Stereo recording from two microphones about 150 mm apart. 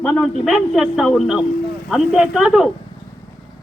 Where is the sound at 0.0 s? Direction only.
5° left (ahead or behind).